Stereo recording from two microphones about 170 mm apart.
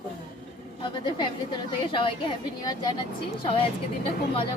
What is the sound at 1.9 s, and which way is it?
Speech, 30° left (ahead or behind).